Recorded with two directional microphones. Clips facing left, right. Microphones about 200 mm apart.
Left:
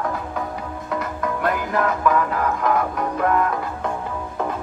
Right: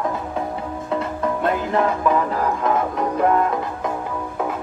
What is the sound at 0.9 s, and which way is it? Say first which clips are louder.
Music: right 3 dB; 30° right (ahead or behind).